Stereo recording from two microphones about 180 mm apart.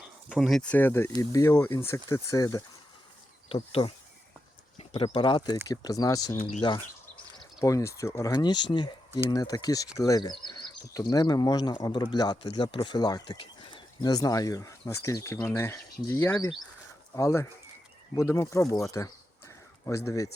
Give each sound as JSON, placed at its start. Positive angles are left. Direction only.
{"t": 0.3, "sound": "speech", "side_deg": 0}
{"t": 3.5, "sound": "speech", "side_deg": 30}
{"t": 4.8, "sound": "a sound", "side_deg": 35}
{"t": 5.0, "sound": "speech", "side_deg": 25}